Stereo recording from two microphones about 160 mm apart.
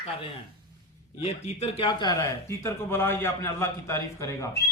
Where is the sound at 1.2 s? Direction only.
40° left (ahead or behind); by 4.6 s 20° left (ahead or behind).